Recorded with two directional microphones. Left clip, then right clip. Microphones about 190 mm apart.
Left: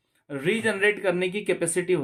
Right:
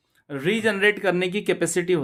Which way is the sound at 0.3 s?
35° right (ahead or behind).